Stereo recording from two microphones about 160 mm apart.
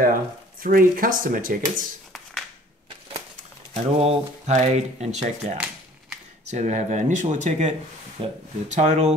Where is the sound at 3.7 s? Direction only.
40° right (ahead or behind).